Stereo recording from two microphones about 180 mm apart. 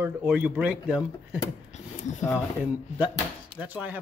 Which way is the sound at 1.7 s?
40° left (ahead or behind).